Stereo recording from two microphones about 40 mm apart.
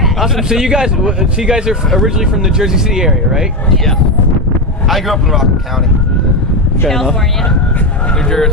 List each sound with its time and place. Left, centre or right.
0.2 s a man's voice: centre
4.8 s speech: centre
6.9 s speech: centre